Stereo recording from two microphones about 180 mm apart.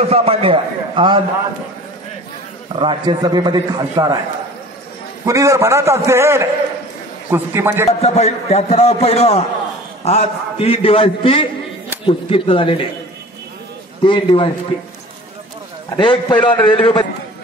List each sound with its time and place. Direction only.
0.0 s a man's voice: 35° right (ahead or behind)
2.7 s a man's voice: 25° right (ahead or behind)
5.2 s a man's voice: 15° right (ahead or behind)
7.8 s a man's voice: 35° left (ahead or behind)
14.0 s speech: 30° left (ahead or behind)
16.0 s speech: 25° left (ahead or behind)